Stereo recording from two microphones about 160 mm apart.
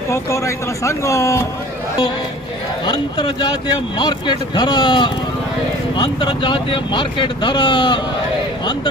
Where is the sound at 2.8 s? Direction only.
30° left (ahead or behind).